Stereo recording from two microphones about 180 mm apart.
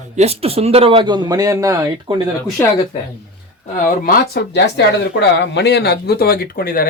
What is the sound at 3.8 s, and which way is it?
Speech, 55° left (ahead or behind).